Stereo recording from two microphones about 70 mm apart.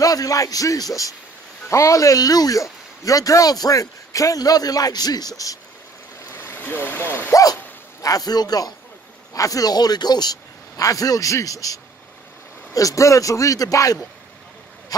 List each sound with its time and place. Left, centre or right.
0.0 s a man's voice: left
6.3 s speech: left
8.0 s speech: left
9.3 s speech: left
10.8 s a man's voice: left
14.9 s a sound: left